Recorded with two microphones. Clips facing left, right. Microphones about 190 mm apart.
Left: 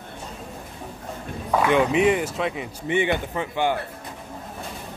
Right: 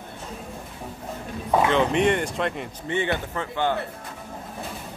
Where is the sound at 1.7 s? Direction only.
5° left (ahead or behind).